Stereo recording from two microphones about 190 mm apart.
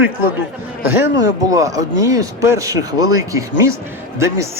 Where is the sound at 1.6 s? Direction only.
15° right (ahead or behind).